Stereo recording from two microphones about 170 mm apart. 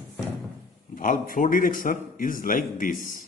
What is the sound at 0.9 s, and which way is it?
A man's voice, 55° left (ahead or behind).